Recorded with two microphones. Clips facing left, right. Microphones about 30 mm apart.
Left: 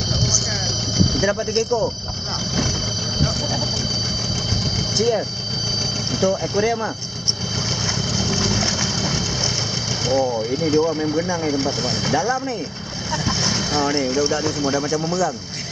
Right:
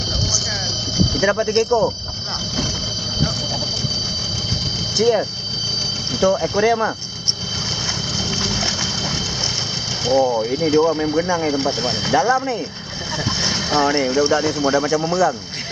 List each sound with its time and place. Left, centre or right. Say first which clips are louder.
1.1 s speech: right 3 dB; right
4.9 s speech: right 4 dB; centre
8.2 s a sound: left 1 dB; centre
10.0 s speech: right 4 dB; centre